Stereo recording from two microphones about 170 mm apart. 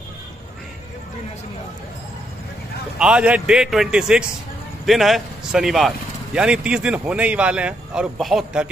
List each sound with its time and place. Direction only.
3.0 s speech: 5° right (ahead or behind)